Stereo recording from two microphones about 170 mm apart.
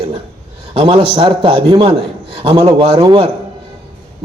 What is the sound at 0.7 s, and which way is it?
A man's voice, 30° right (ahead or behind).